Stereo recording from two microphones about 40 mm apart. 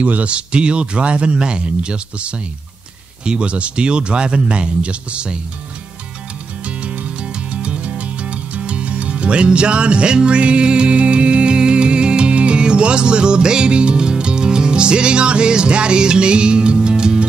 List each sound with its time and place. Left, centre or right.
0.0 s a man's voice: right
7.6 s music: right